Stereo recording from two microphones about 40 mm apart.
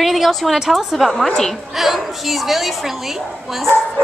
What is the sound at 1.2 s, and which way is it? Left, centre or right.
Speech, centre.